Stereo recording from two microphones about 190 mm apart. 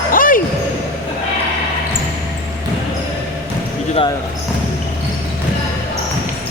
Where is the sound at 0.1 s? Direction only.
45° left (ahead or behind).